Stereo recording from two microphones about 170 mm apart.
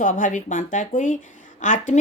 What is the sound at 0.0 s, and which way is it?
Speech, 50° left (ahead or behind).